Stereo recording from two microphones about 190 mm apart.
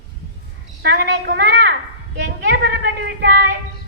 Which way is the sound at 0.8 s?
60° right (ahead or behind).